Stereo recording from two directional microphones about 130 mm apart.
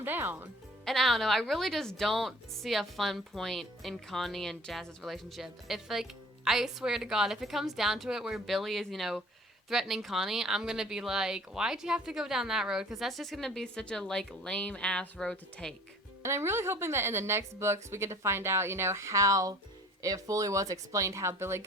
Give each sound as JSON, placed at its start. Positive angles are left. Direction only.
{"t": 0.0, "sound": "speech", "side_deg": -15}
{"t": 0.9, "sound": "speech", "side_deg": 0}
{"t": 16.2, "sound": "a woman's voice", "side_deg": -20}